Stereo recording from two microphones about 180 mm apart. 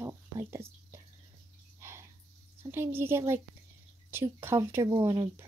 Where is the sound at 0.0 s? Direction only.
15° right (ahead or behind).